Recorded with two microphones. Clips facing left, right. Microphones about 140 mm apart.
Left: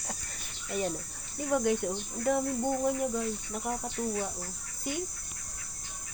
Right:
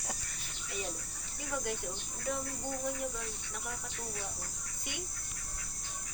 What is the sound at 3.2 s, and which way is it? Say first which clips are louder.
Speech: left 10 dB; 45° left (ahead or behind).